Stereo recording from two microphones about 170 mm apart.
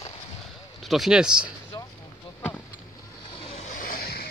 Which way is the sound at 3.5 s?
45° left (ahead or behind).